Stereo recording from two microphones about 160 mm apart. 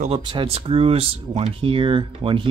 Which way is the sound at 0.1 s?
30° right (ahead or behind).